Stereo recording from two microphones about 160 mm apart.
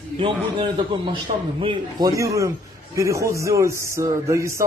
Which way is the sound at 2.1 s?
20° right (ahead or behind).